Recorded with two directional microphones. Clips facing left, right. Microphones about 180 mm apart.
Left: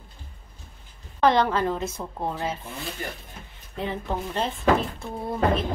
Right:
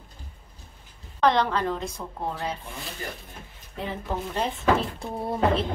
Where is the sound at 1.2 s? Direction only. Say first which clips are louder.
Left 2 dB; centre (ahead or behind).